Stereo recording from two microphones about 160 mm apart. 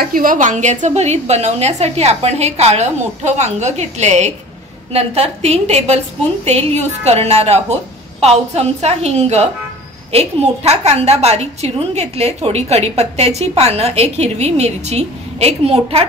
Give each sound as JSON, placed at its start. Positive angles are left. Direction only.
{"t": 0.0, "sound": "a woman's voice", "side_deg": -60}